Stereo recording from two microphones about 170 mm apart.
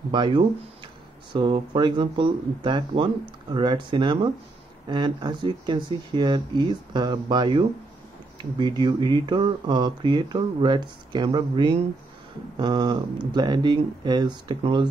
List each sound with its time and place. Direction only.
0.1 s speech: 25° right (ahead or behind)